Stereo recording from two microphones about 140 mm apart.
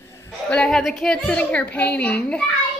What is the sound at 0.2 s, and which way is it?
A child's voice, 10° left (ahead or behind).